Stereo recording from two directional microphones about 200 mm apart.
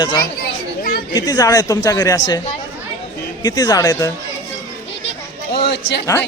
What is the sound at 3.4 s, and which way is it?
Speech, 20° left (ahead or behind).